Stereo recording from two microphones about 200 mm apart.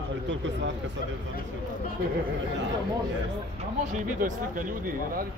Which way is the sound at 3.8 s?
40° right (ahead or behind).